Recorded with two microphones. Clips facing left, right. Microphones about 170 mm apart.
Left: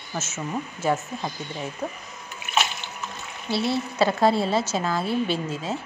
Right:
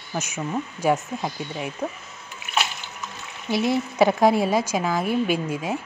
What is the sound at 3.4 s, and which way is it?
Speech, 15° right (ahead or behind).